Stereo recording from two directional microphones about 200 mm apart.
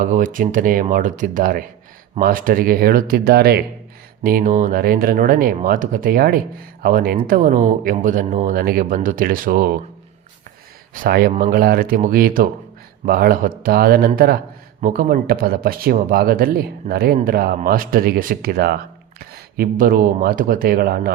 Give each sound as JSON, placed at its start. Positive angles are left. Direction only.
{"t": 0.0, "sound": "speech", "side_deg": -40}
{"t": 10.9, "sound": "speech", "side_deg": -45}